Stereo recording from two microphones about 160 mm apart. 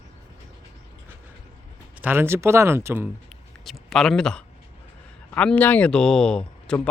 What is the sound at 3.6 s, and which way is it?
Speech, centre (ahead or behind).